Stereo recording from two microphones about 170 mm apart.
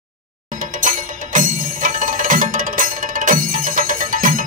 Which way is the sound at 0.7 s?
50° right (ahead or behind).